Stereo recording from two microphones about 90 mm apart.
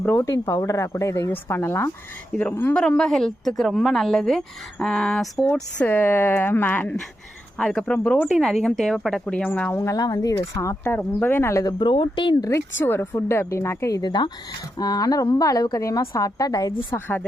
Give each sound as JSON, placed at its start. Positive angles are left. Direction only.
{"t": 0.2, "sound": "a woman's voice", "side_deg": 35}
{"t": 1.3, "sound": "speech", "side_deg": 25}
{"t": 2.7, "sound": "a woman's voice", "side_deg": 10}
{"t": 5.8, "sound": "speech", "side_deg": 25}
{"t": 7.6, "sound": "speech", "side_deg": 10}
{"t": 8.3, "sound": "a woman's voice", "side_deg": 0}
{"t": 9.2, "sound": "speech", "side_deg": 15}
{"t": 9.7, "sound": "a woman's voice", "side_deg": 35}
{"t": 10.8, "sound": "speech", "side_deg": 20}
{"t": 11.6, "sound": "speech", "side_deg": 60}
{"t": 12.5, "sound": "speech", "side_deg": 30}
{"t": 14.0, "sound": "a woman's voice", "side_deg": 55}
{"t": 16.9, "sound": "speech", "side_deg": 25}